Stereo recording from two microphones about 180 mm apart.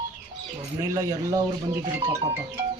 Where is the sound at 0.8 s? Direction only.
15° right (ahead or behind).